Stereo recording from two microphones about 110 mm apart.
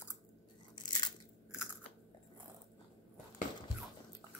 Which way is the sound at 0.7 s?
45° left (ahead or behind).